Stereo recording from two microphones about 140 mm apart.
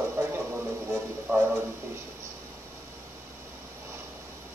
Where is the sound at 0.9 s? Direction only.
10° right (ahead or behind).